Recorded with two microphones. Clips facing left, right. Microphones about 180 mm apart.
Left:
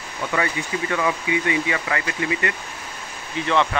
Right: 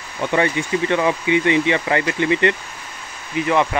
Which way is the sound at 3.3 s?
10° right (ahead or behind).